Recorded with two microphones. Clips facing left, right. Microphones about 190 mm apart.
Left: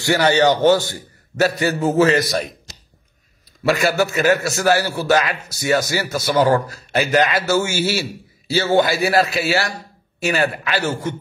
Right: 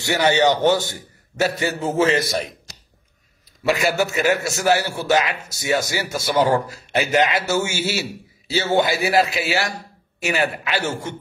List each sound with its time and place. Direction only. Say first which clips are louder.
0.0 s a man's voice: left 2 dB; 20° right (ahead or behind)
3.6 s a man's voice: left 2 dB; 20° right (ahead or behind)
10.2 s a man's voice: left 2 dB; 20° right (ahead or behind)